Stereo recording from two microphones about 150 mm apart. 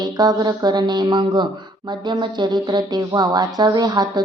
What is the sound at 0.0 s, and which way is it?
Speech, 25° right (ahead or behind).